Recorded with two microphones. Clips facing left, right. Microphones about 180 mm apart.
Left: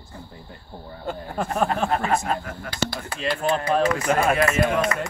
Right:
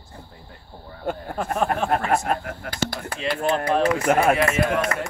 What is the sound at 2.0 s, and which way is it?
Speech, 55° right (ahead or behind).